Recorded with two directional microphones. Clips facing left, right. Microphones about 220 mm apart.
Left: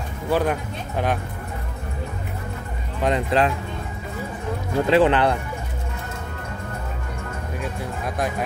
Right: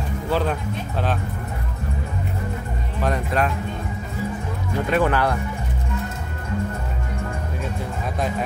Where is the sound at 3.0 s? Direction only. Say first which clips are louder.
Left 3 dB; 25° left (ahead or behind).